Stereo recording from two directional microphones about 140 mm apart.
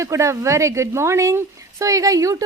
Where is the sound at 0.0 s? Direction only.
20° right (ahead or behind).